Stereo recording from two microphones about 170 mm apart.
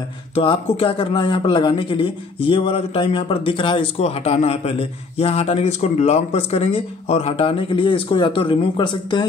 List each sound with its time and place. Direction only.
0.3 s speech: 35° left (ahead or behind)